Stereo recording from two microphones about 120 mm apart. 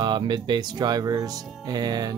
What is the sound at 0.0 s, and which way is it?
Speech, 40° right (ahead or behind).